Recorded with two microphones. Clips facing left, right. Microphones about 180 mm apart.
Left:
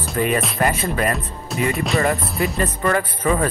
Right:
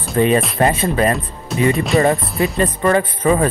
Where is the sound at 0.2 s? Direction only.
30° right (ahead or behind).